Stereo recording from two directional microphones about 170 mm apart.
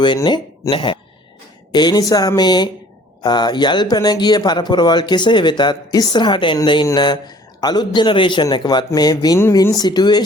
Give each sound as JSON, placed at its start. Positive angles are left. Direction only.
{"t": 0.0, "sound": "speech", "side_deg": 25}